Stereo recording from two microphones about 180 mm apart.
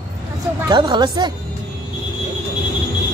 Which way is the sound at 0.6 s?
25° right (ahead or behind).